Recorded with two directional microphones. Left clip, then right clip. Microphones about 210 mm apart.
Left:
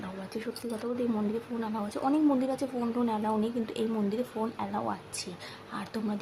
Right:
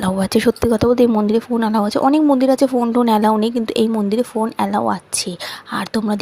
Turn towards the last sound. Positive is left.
turn(degrees=-40)  # may be behind; listen again after turning